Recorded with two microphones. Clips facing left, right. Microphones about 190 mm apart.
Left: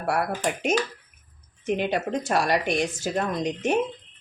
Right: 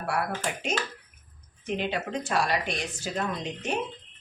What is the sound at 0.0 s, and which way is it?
Speech, 40° left (ahead or behind).